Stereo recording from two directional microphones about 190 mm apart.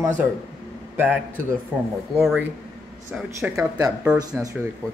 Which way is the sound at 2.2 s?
5° right (ahead or behind).